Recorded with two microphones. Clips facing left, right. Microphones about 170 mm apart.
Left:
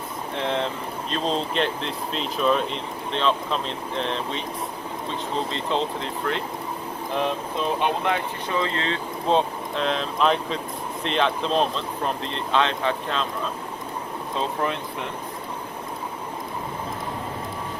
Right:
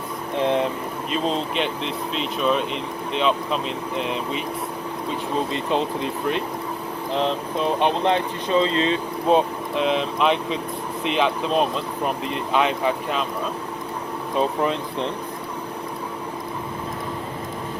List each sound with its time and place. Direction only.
0.3 s speech: 15° right (ahead or behind)
1.1 s speech: 5° right (ahead or behind)
5.5 s speech: 15° right (ahead or behind)
7.8 s speech: 20° right (ahead or behind)
14.3 s speech: 20° right (ahead or behind)